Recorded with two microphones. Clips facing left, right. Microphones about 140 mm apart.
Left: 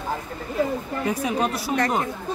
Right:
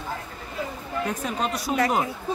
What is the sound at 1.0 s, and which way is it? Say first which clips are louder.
Speech: left 4 dB; 10° left (ahead or behind).